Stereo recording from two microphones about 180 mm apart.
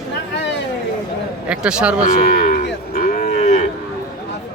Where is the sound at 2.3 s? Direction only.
50° left (ahead or behind).